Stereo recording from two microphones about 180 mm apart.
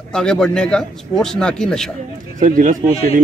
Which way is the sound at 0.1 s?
5° left (ahead or behind).